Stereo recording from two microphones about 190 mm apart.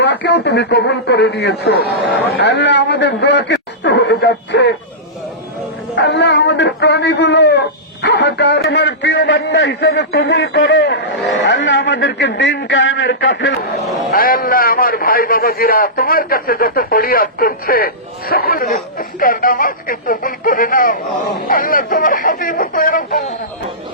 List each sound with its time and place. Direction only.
0.0 s a man's voice: 65° left (ahead or behind)
6.0 s a man's voice: 65° left (ahead or behind)
14.1 s a man's voice: 50° left (ahead or behind)